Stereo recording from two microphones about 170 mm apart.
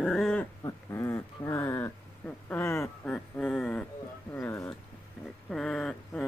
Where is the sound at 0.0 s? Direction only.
Centre (ahead or behind).